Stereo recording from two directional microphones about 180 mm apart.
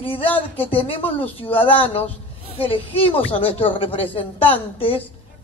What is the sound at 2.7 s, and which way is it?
A woman's voice, 30° left (ahead or behind).